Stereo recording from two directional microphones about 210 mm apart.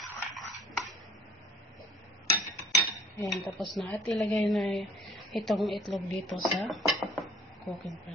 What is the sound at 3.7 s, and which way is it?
A woman's voice, centre (ahead or behind).